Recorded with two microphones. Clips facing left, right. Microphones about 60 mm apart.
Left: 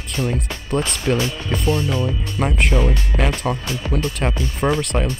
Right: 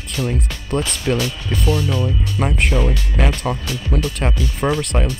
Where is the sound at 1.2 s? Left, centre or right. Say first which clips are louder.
Even; left.